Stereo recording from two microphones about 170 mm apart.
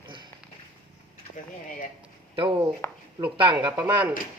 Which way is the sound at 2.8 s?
15° left (ahead or behind).